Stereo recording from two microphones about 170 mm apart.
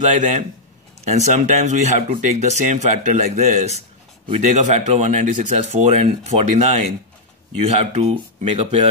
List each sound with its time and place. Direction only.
0.0 s speech: 45° right (ahead or behind)